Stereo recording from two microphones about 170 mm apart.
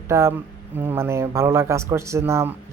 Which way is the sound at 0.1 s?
15° right (ahead or behind).